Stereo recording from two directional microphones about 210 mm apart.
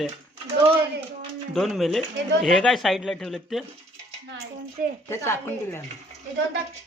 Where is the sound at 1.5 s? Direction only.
Centre (ahead or behind).